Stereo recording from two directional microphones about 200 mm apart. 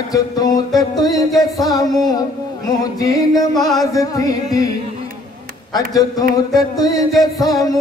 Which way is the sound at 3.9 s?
15° left (ahead or behind).